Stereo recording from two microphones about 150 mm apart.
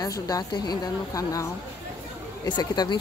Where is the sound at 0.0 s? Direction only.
25° left (ahead or behind).